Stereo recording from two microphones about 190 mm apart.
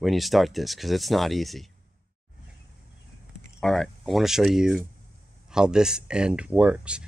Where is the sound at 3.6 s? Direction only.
Centre (ahead or behind).